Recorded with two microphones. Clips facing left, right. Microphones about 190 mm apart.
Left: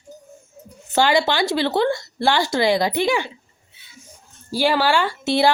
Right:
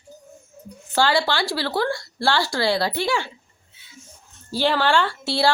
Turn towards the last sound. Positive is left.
turn(degrees=20)  # may be behind; listen again after turning